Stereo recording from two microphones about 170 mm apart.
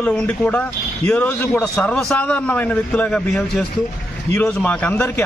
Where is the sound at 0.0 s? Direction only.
5° left (ahead or behind).